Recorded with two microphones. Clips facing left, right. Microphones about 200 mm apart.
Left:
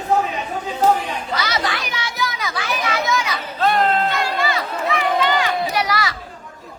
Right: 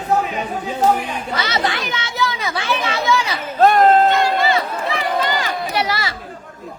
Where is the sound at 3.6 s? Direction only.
45° right (ahead or behind).